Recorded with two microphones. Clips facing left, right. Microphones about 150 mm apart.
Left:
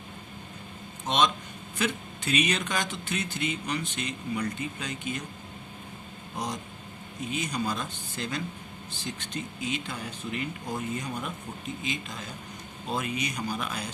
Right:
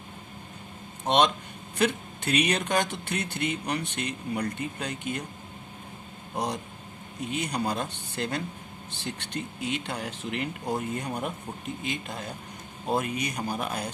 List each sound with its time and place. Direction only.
1.0 s speech: 60° right (ahead or behind)
6.3 s speech: 60° right (ahead or behind)